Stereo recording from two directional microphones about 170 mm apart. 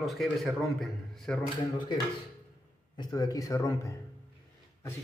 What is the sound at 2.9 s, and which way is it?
A man's voice, 25° left (ahead or behind).